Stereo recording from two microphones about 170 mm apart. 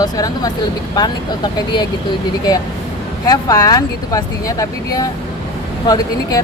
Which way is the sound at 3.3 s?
20° left (ahead or behind).